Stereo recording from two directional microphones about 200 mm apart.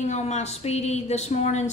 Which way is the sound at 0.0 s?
35° left (ahead or behind).